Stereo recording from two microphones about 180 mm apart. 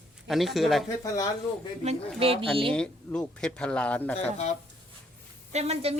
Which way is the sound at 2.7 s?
5° left (ahead or behind).